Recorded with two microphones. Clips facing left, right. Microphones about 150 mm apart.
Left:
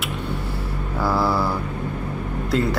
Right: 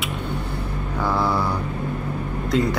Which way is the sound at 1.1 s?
5° left (ahead or behind).